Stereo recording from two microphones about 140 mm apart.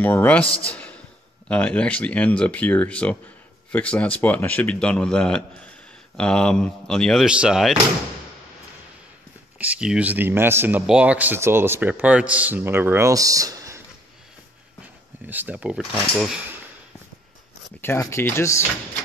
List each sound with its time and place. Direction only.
0.0 s a man's voice: 15° left (ahead or behind); by 7.7 s 5° right (ahead or behind)
9.6 s a man's voice: 10° right (ahead or behind); by 13.7 s 25° right (ahead or behind)
15.2 s a man's voice: 10° right (ahead or behind)
17.8 s speech: 15° left (ahead or behind)